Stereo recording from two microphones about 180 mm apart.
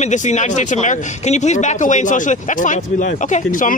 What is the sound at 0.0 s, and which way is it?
Speech, 40° left (ahead or behind).